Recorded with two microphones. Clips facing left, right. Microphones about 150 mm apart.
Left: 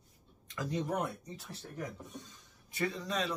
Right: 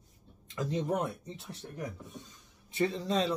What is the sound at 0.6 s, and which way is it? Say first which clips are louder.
Speech: right 3 dB; 25° right (ahead or behind).